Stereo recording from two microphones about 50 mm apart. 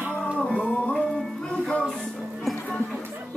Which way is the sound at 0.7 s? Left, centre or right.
Left.